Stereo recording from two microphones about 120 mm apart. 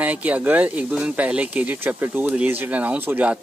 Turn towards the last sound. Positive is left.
turn(degrees=-15)  # may be behind; listen again after turning